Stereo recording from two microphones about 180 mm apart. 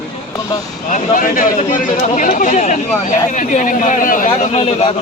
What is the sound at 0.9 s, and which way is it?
Speech, 45° left (ahead or behind).